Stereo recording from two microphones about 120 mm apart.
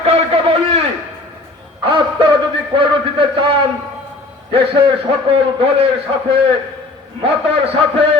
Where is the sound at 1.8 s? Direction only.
45° right (ahead or behind).